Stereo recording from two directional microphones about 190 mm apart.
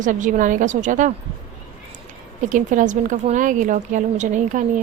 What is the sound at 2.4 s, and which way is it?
A woman's voice, 40° right (ahead or behind).